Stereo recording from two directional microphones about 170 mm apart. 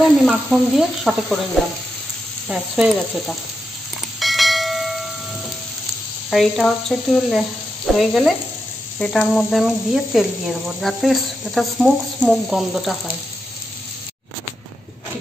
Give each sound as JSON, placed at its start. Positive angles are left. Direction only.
{"t": 0.2, "sound": "speech", "side_deg": -5}
{"t": 2.4, "sound": "speech", "side_deg": -5}
{"t": 4.2, "sound": "bell", "side_deg": 0}
{"t": 6.3, "sound": "speech", "side_deg": 5}